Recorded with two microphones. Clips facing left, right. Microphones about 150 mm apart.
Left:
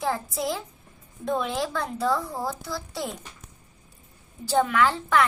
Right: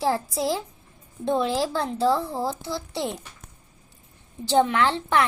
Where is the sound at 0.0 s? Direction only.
30° right (ahead or behind).